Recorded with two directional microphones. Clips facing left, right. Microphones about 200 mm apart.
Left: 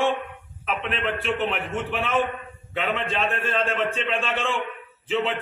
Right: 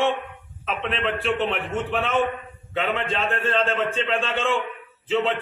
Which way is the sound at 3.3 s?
25° right (ahead or behind).